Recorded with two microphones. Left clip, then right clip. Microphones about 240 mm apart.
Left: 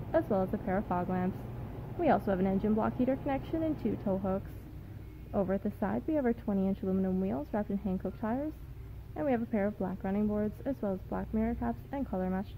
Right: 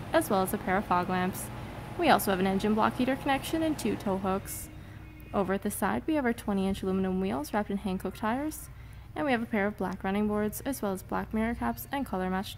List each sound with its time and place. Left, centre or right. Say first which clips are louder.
0.1 s a woman's voice: right 3 dB; centre